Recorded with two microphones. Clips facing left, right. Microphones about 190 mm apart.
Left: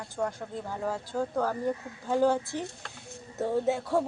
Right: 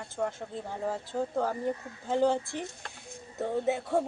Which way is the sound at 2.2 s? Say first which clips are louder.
Left 1 dB; 20° right (ahead or behind).